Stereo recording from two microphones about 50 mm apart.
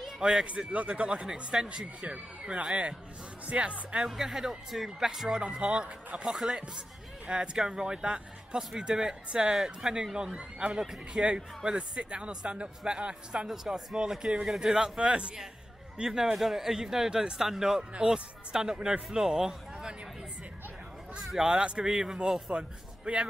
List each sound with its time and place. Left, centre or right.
0.2 s speech: centre
0.5 s speech: right
4.1 s speech: centre
5.4 s speech: right
13.5 s speech: centre
21.3 s speech: centre